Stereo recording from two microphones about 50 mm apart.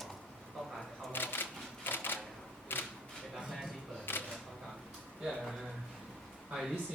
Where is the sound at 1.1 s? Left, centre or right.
Left.